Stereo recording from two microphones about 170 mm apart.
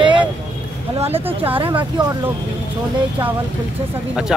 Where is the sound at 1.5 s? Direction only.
30° right (ahead or behind).